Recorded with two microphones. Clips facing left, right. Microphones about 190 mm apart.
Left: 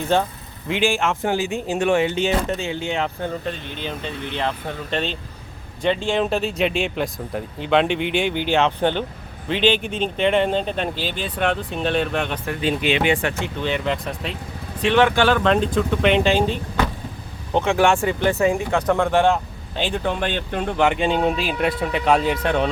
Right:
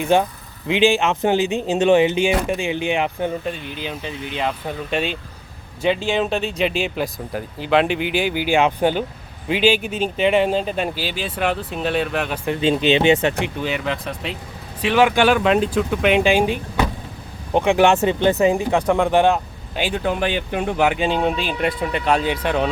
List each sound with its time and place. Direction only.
0.0 s speech: 15° right (ahead or behind)
12.5 s speech: 25° right (ahead or behind)
13.4 s speech: 5° right (ahead or behind)